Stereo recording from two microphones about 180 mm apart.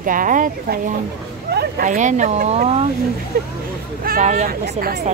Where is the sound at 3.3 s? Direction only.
55° right (ahead or behind).